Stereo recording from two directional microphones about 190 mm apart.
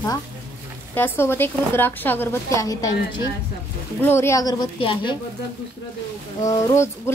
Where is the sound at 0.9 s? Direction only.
10° left (ahead or behind).